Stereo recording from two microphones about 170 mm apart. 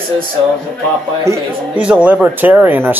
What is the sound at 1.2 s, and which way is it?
Speech, 15° right (ahead or behind).